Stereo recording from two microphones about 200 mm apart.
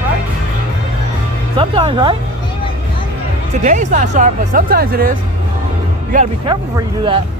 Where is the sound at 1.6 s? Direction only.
25° right (ahead or behind).